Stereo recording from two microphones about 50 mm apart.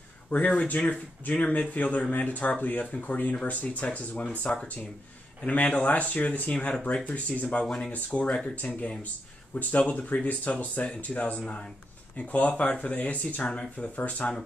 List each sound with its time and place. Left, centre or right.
0.3 s speech: left
7.6 s speech: centre
7.9 s speech: left
9.6 s speech: left
11.4 s speech: left
12.2 s speech: left